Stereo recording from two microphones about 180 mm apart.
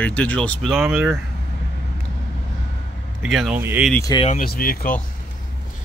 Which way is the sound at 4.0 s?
20° left (ahead or behind).